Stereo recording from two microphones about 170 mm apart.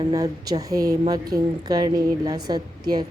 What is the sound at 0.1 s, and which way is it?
A woman's voice, 20° right (ahead or behind).